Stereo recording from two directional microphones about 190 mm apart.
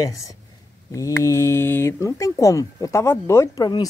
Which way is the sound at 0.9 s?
15° left (ahead or behind).